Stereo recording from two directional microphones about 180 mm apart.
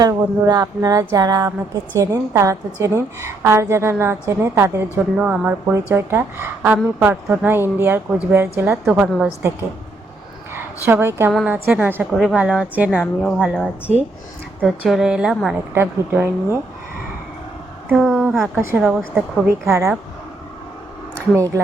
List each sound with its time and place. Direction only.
0.0 s a sound: 20° right (ahead or behind)
2.0 s a woman's voice: 15° right (ahead or behind)
10.8 s a woman's voice: 10° right (ahead or behind)
17.9 s a woman's voice: centre (ahead or behind)
21.3 s a woman's voice: 20° right (ahead or behind)